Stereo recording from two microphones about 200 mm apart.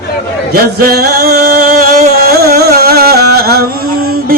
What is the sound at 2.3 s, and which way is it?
Carnatic music, 50° right (ahead or behind).